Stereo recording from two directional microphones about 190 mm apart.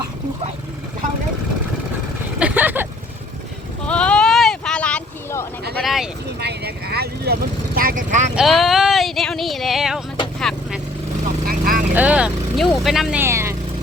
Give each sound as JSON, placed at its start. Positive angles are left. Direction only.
{"t": 2.4, "sound": "vehicle", "side_deg": -10}
{"t": 3.8, "sound": "boat", "side_deg": 5}
{"t": 5.7, "sound": "vehicle", "side_deg": 0}
{"t": 6.2, "sound": "vehicle", "side_deg": -60}
{"t": 8.4, "sound": "a sound", "side_deg": 0}
{"t": 10.5, "sound": "vehicle", "side_deg": 0}
{"t": 11.4, "sound": "vehicle", "side_deg": -50}
{"t": 11.9, "sound": "speech", "side_deg": -5}